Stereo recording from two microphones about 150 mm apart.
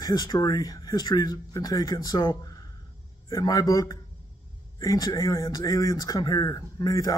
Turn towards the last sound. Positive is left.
turn(degrees=25)  # may be behind; listen again after turning